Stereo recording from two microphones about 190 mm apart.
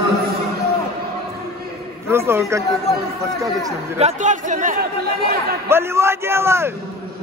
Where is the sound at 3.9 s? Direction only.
40° right (ahead or behind); by 5.6 s 55° right (ahead or behind).